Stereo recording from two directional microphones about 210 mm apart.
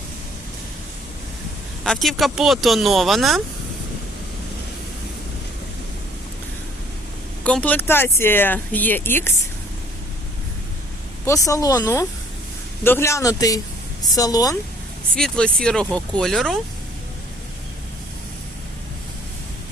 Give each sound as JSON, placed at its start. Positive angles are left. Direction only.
{"t": 1.8, "sound": "speech", "side_deg": 0}
{"t": 7.4, "sound": "speech", "side_deg": 5}
{"t": 11.3, "sound": "speech", "side_deg": 15}
{"t": 15.1, "sound": "speech", "side_deg": 5}